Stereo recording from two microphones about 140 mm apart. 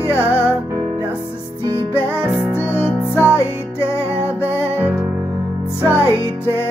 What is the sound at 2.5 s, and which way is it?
Music, 15° left (ahead or behind).